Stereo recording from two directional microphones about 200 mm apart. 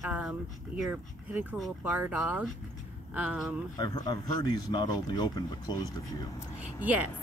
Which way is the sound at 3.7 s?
20° left (ahead or behind).